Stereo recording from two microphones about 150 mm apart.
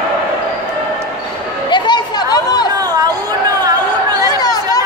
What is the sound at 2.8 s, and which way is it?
Chatter, 25° right (ahead or behind).